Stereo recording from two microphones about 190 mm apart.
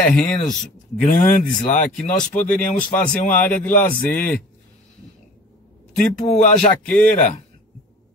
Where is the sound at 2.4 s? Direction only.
5° left (ahead or behind).